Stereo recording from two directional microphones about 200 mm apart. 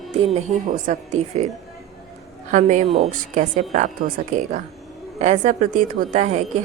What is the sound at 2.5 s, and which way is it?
Speech, 40° right (ahead or behind).